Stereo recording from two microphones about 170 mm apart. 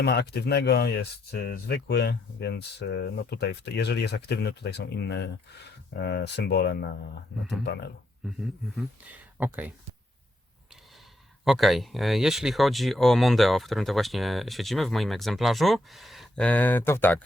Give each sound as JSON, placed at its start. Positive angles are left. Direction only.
{"t": 0.0, "sound": "speech", "side_deg": 75}
{"t": 8.3, "sound": "speech", "side_deg": 0}
{"t": 11.4, "sound": "speech", "side_deg": 0}